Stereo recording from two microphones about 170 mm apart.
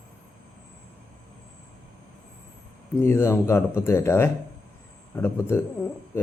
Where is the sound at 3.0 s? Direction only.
15° left (ahead or behind).